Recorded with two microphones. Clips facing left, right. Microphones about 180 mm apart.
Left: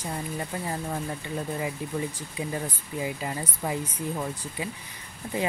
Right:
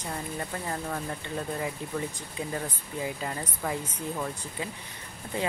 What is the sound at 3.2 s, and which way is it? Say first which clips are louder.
Speech: left 1 dB; 10° left (ahead or behind).